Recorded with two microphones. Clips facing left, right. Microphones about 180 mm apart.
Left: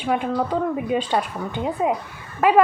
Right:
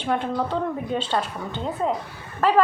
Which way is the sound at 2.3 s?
15° left (ahead or behind).